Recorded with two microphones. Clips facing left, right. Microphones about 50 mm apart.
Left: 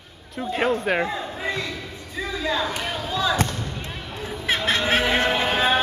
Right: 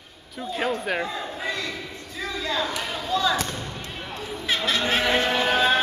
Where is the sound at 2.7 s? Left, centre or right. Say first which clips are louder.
Even; left.